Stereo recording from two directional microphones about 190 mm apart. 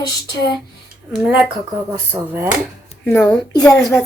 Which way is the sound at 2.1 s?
10° right (ahead or behind).